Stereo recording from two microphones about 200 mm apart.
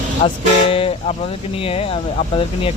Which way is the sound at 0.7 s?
30° left (ahead or behind).